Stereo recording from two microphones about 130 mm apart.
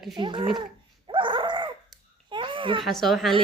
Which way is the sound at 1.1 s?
40° right (ahead or behind).